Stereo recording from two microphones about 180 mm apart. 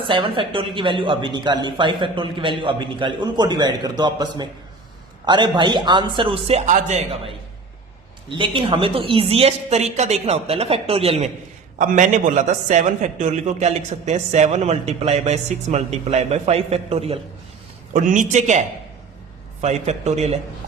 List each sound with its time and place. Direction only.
0.1 s speech: 30° right (ahead or behind)
8.4 s a man's voice: 30° right (ahead or behind)
11.8 s a man's voice: 45° right (ahead or behind)
17.9 s a man's voice: 45° right (ahead or behind)
19.6 s a man's voice: 40° right (ahead or behind)